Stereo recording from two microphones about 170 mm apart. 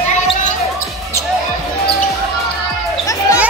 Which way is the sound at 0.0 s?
40° left (ahead or behind).